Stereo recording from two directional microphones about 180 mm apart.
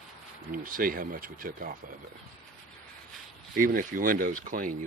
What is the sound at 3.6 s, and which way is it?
Speech, 50° right (ahead or behind).